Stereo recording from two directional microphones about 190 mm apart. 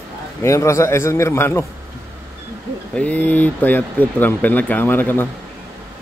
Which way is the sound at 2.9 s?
5° left (ahead or behind).